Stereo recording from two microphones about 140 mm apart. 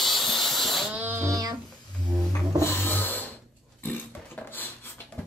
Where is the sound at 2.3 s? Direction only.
15° left (ahead or behind).